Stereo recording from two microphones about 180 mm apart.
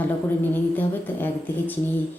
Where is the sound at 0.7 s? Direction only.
10° left (ahead or behind).